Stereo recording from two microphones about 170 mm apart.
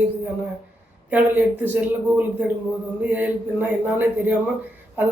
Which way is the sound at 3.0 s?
10° right (ahead or behind).